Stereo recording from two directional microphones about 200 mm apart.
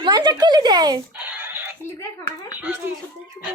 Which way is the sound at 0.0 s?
20° right (ahead or behind).